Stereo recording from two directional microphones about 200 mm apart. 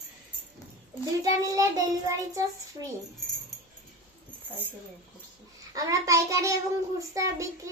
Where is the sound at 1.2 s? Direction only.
15° right (ahead or behind).